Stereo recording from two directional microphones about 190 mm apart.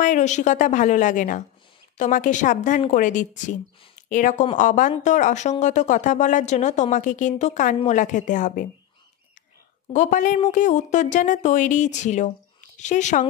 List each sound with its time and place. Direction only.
0.0 s speech: 40° left (ahead or behind)
9.9 s speech: 40° left (ahead or behind)